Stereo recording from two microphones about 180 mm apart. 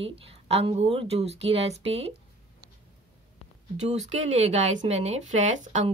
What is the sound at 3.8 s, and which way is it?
Speech, 40° right (ahead or behind).